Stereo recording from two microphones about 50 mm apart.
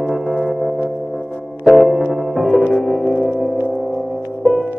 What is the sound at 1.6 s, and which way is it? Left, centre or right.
Music, centre.